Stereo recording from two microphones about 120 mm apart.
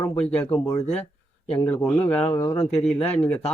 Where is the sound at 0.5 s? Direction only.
25° left (ahead or behind).